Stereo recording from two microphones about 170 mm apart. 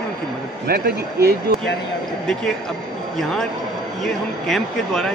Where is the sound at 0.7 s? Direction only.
65° right (ahead or behind).